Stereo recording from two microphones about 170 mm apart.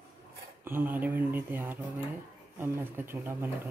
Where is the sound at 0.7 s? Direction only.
10° right (ahead or behind).